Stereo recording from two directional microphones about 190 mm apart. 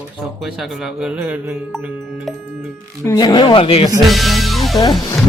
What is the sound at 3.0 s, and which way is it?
Speech, 15° left (ahead or behind).